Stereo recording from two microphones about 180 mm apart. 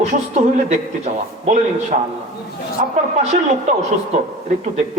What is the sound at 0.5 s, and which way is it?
A woman's voice, 40° right (ahead or behind).